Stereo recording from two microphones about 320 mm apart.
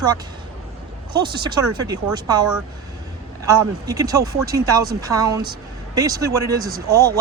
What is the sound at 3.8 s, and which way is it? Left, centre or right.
Speech, centre.